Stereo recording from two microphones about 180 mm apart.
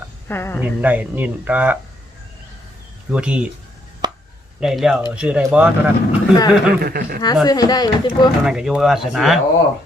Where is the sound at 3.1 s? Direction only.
5° right (ahead or behind).